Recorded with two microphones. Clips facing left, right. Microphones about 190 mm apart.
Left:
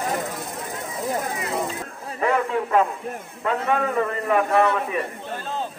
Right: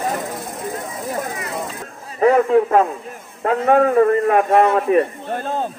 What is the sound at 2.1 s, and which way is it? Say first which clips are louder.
A man's voice: right 9 dB; 40° right (ahead or behind).